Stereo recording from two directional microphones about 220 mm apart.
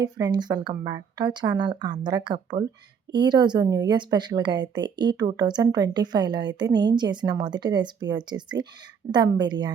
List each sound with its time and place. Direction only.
0.0 s speech: 20° right (ahead or behind)